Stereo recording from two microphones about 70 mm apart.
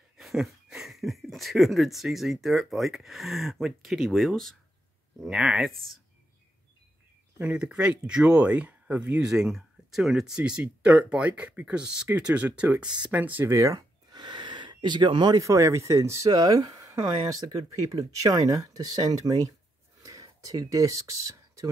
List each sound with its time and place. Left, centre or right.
0.2 s speech: centre
5.2 s speech: centre
7.5 s speech: centre
9.2 s speech: centre; by 13.4 s right
13.4 s speech: right
13.7 s a sound: right
15.4 s speech: right
16.3 s speech: right
20.0 s a sound: right